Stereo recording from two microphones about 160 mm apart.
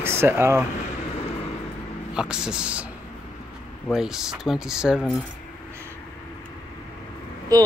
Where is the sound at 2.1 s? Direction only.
5° right (ahead or behind).